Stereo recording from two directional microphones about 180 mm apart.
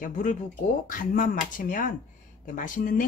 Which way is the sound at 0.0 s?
45° left (ahead or behind).